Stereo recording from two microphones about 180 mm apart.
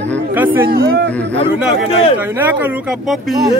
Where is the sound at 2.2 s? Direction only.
10° right (ahead or behind).